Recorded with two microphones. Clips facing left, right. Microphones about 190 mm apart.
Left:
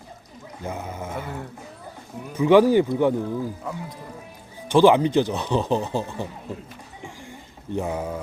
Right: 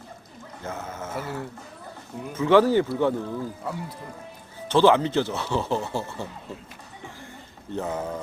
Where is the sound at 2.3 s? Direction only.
15° left (ahead or behind).